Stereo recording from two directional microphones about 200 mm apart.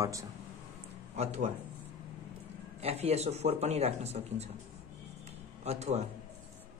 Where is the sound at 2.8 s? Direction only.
30° right (ahead or behind).